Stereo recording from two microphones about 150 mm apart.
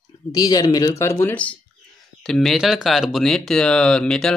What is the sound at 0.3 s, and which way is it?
Speech, 25° left (ahead or behind).